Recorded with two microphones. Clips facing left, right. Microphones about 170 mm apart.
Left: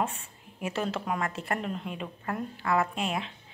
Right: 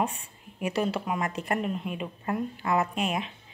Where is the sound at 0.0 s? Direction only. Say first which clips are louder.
Right 2 dB; 15° right (ahead or behind).